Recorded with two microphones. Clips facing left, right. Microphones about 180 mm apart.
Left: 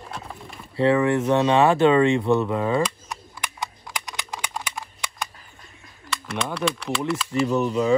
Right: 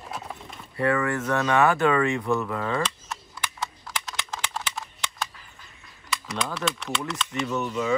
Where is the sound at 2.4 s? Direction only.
20° left (ahead or behind).